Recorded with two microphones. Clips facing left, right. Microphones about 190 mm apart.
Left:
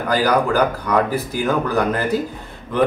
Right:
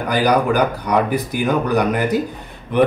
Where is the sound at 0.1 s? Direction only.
15° right (ahead or behind).